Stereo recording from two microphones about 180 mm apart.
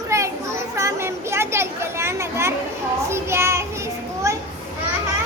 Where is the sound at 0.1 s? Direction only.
15° right (ahead or behind).